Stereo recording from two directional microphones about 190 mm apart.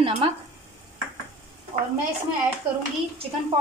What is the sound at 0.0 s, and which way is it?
Speech, 30° right (ahead or behind).